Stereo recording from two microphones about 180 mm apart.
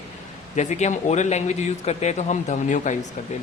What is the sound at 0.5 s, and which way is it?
Speech, 40° left (ahead or behind).